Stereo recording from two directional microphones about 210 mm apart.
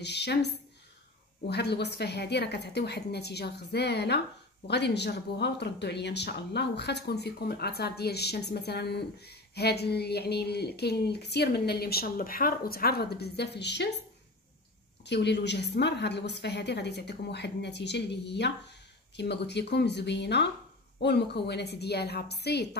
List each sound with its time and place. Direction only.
0.0 s speech: 55° left (ahead or behind)
1.5 s speech: 55° left (ahead or behind)
15.0 s speech: 55° left (ahead or behind)